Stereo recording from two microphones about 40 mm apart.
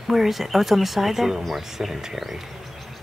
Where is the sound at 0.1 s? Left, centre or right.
Centre.